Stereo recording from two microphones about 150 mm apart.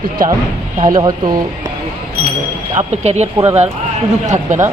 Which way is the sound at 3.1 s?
45° right (ahead or behind).